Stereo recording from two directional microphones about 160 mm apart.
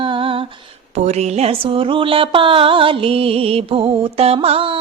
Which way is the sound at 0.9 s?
45° right (ahead or behind).